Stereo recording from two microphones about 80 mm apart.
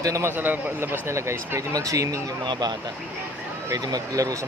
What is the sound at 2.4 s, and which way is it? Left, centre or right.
Speech, right.